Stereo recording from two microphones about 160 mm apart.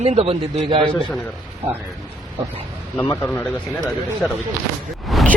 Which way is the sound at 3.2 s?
10° left (ahead or behind).